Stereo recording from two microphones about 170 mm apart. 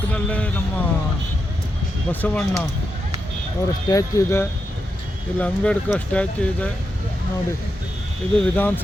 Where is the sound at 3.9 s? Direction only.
20° left (ahead or behind).